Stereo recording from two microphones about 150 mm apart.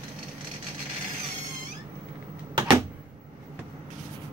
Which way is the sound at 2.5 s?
25° right (ahead or behind).